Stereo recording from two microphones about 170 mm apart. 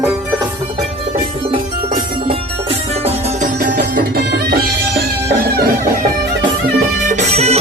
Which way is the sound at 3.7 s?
70° right (ahead or behind).